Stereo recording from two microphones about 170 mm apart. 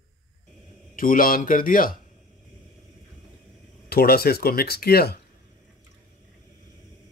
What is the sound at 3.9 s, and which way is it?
Speech, 65° left (ahead or behind).